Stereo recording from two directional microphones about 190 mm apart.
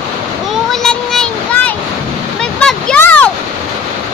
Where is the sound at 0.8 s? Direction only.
5° left (ahead or behind).